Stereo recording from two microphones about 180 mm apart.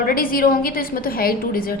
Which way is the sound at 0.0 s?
55° left (ahead or behind).